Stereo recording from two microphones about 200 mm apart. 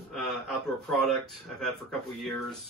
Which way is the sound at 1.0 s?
Centre (ahead or behind).